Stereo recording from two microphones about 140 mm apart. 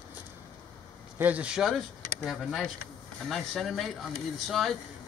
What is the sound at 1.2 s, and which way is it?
Speech, 10° right (ahead or behind).